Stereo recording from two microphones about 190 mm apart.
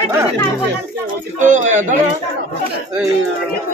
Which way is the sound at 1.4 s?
40° right (ahead or behind).